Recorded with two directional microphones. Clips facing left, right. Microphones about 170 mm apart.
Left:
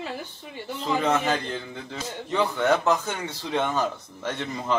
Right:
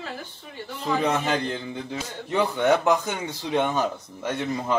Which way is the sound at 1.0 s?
15° right (ahead or behind).